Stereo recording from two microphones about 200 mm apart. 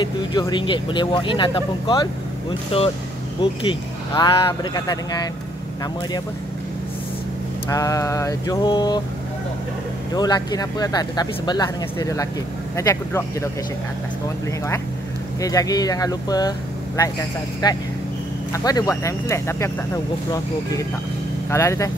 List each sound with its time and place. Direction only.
0.0 s speech: 20° left (ahead or behind)
3.6 s speech: 20° left (ahead or behind)
7.7 s speech: 15° left (ahead or behind)
10.1 s speech: 20° left (ahead or behind)
15.4 s speech: 15° left (ahead or behind)
21.5 s speech: 15° left (ahead or behind)